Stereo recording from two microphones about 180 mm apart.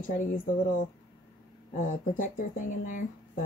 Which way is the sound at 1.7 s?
50° left (ahead or behind).